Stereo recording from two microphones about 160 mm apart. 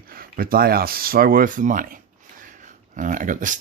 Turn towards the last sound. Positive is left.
turn(degrees=-55)  # may be behind; listen again after turning